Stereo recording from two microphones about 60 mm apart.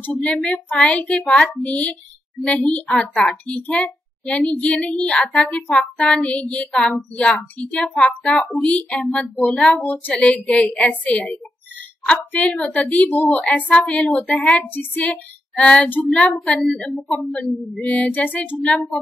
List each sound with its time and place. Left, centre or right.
0.0 s a child's voice: left
8.2 s a woman's voice: centre